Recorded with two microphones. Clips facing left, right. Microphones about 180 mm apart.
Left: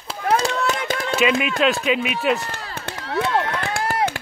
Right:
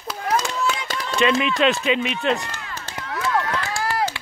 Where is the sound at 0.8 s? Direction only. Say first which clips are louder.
Left 5 dB; 55° left (ahead or behind).